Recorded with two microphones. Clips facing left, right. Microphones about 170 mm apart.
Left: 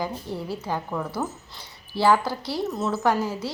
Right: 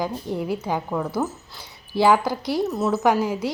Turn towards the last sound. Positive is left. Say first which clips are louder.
# right 3 dB
turn(degrees=-15)  # may be behind; listen again after turning